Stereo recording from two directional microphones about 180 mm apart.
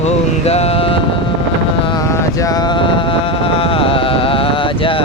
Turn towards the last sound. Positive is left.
turn(degrees=30)  # may be behind; listen again after turning